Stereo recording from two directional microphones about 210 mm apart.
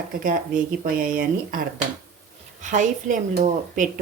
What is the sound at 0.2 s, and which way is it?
Speech, 40° right (ahead or behind).